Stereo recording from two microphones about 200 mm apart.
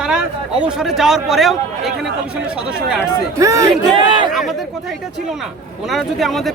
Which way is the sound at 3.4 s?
15° right (ahead or behind).